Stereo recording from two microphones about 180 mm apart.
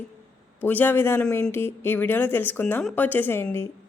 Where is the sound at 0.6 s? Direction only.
10° left (ahead or behind).